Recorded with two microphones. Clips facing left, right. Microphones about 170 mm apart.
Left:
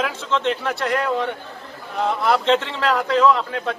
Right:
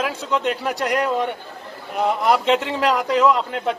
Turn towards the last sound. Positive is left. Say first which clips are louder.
# even
turn(degrees=-15)  # may be behind; listen again after turning